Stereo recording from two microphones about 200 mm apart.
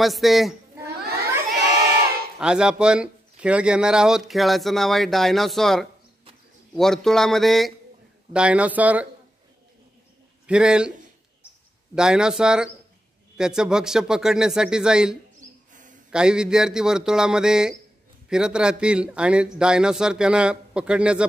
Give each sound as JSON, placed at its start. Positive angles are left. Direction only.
{"t": 0.0, "sound": "speech", "side_deg": 0}
{"t": 2.3, "sound": "a man's voice", "side_deg": -5}
{"t": 10.4, "sound": "a man's voice", "side_deg": -5}
{"t": 11.9, "sound": "speech", "side_deg": -5}
{"t": 15.7, "sound": "a sound", "side_deg": -40}
{"t": 16.1, "sound": "speech", "side_deg": -5}